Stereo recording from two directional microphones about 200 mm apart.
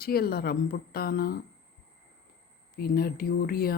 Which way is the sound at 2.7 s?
50° left (ahead or behind).